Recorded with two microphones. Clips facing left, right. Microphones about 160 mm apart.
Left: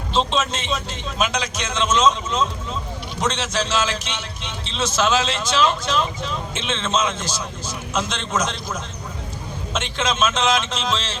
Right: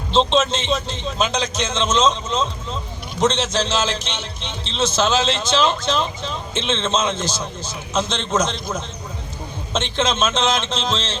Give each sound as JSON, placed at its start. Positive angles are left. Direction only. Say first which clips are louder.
{"t": 0.1, "sound": "a man's voice", "louder": "right 4 dB", "side_deg": -25}
{"t": 9.7, "sound": "a man's voice", "louder": "right 3 dB", "side_deg": -25}